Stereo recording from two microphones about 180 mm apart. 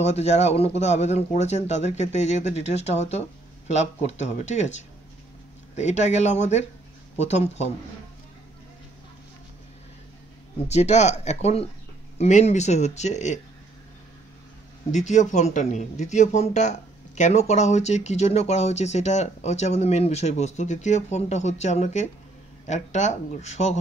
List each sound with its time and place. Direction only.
0.0 s speech: 40° left (ahead or behind)
5.8 s speech: 40° left (ahead or behind)
10.7 s speech: 40° left (ahead or behind)
14.9 s speech: 40° left (ahead or behind)